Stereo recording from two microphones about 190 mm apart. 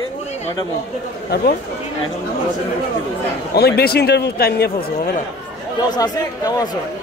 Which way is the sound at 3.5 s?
55° left (ahead or behind).